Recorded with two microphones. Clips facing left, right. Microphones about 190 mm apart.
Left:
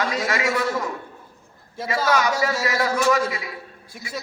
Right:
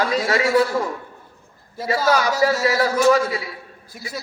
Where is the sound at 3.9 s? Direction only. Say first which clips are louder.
Right 2 dB; 25° left (ahead or behind).